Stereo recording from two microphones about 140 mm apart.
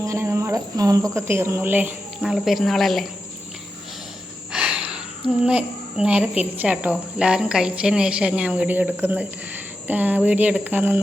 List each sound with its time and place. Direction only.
0.0 s speech: 20° right (ahead or behind)
2.2 s speech: centre (ahead or behind)
4.5 s a sound: 5° right (ahead or behind)
5.5 s a woman's voice: 10° right (ahead or behind)